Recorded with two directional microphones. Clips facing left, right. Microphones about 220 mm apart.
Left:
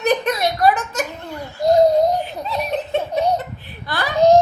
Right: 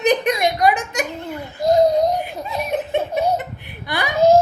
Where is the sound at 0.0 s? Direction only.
15° right (ahead or behind).